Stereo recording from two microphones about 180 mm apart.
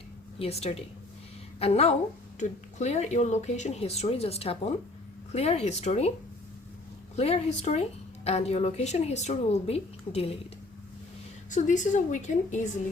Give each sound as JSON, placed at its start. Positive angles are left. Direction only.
{"t": 0.3, "sound": "a woman's voice", "side_deg": 35}
{"t": 7.2, "sound": "a woman's voice", "side_deg": 35}
{"t": 11.5, "sound": "a woman's voice", "side_deg": 45}